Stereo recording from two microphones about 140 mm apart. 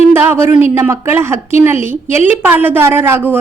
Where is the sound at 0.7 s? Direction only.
20° right (ahead or behind).